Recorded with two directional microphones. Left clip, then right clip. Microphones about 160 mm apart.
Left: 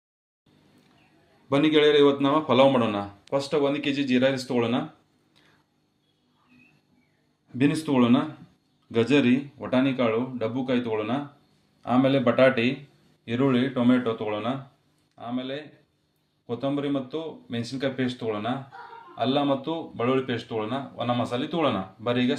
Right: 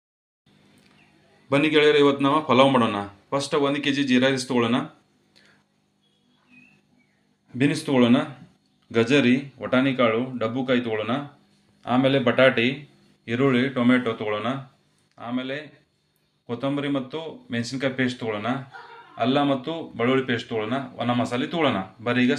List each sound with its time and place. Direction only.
1.5 s a man's voice: 5° left (ahead or behind)
7.6 s a man's voice: 5° left (ahead or behind)